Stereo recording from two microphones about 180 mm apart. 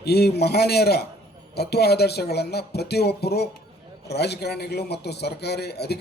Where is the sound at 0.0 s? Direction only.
65° left (ahead or behind).